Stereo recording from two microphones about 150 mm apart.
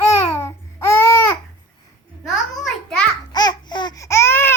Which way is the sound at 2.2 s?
Centre (ahead or behind).